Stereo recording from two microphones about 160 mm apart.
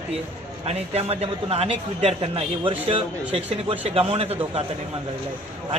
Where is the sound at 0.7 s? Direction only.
40° right (ahead or behind).